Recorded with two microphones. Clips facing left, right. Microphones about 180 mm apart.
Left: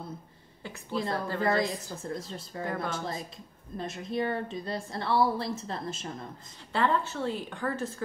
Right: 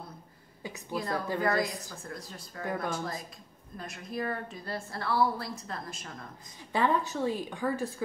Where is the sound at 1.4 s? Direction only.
20° left (ahead or behind).